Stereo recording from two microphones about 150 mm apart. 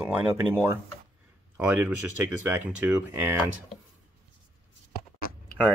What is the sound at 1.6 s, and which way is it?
Speech, 10° right (ahead or behind).